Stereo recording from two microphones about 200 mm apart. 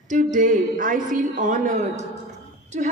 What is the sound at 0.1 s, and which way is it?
A woman's voice, 40° right (ahead or behind).